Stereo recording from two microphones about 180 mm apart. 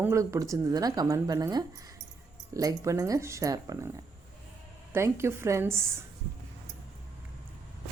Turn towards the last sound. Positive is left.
turn(degrees=-15)  # may be behind; listen again after turning